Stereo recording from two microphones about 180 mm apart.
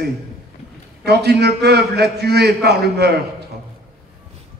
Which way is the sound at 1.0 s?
65° right (ahead or behind).